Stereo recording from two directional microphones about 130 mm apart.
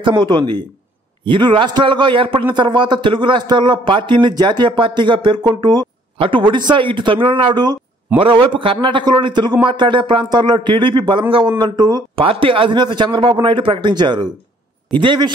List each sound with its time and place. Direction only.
0.0 s speech: 35° right (ahead or behind)
6.1 s speech: 40° right (ahead or behind)